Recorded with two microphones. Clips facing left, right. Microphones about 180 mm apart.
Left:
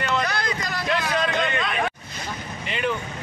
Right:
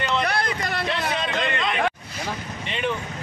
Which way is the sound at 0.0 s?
30° right (ahead or behind).